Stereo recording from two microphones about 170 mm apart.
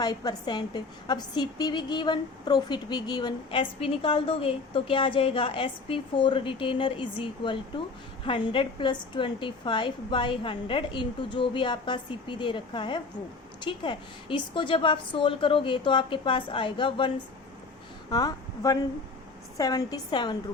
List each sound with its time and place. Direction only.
0.0 s a woman's voice: 25° left (ahead or behind)
18.1 s a woman's voice: 20° left (ahead or behind)